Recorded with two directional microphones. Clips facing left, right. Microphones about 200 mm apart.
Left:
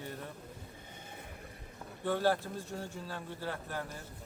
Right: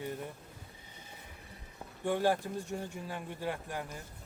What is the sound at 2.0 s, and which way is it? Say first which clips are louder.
A man's voice: right 1 dB; 15° right (ahead or behind).